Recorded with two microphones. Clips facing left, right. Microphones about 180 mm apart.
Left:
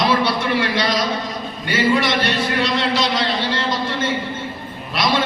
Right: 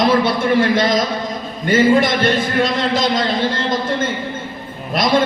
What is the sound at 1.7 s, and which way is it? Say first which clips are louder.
A man's voice: right 5 dB; 50° right (ahead or behind).